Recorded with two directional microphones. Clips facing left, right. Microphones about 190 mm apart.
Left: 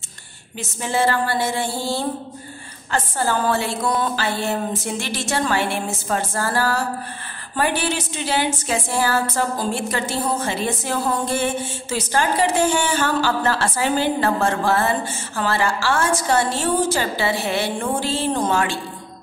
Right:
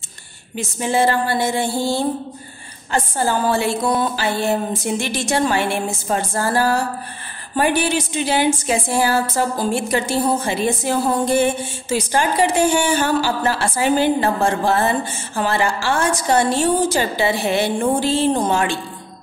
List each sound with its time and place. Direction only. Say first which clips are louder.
0.6 s a woman's voice: right 3 dB; 15° right (ahead or behind)